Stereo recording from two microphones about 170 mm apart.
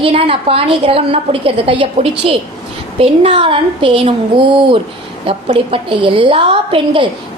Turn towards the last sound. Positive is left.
turn(degrees=-30)  # may be behind; listen again after turning